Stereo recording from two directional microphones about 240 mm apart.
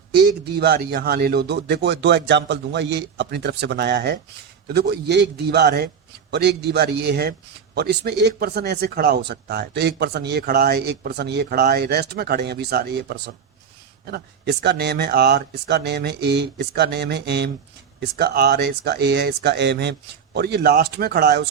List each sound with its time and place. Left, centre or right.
0.2 s speech: right